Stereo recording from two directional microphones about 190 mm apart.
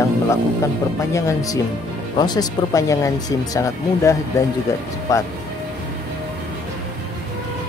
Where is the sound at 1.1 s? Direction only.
15° left (ahead or behind).